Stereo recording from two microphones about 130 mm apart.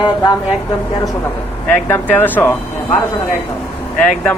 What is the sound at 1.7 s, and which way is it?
Speech, 15° left (ahead or behind).